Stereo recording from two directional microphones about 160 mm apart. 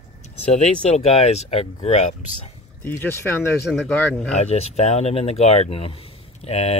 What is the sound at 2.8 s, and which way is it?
Speech, 15° left (ahead or behind).